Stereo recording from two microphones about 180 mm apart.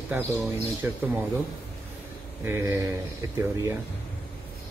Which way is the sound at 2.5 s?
15° right (ahead or behind).